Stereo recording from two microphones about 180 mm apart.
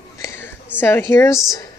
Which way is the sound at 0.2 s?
15° left (ahead or behind).